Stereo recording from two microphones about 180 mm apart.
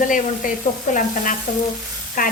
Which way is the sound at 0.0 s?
45° left (ahead or behind).